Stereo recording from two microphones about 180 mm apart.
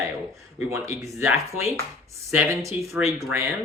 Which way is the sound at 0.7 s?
15° right (ahead or behind).